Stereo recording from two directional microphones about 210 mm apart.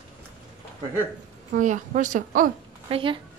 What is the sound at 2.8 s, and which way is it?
Speech, 25° right (ahead or behind).